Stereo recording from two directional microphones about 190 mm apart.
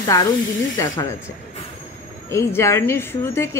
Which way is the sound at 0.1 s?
15° left (ahead or behind).